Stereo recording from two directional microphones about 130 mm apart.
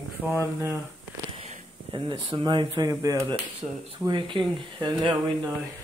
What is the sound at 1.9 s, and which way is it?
Speech, 40° right (ahead or behind).